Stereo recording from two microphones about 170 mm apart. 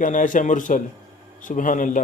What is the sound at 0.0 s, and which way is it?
Speech, 50° left (ahead or behind).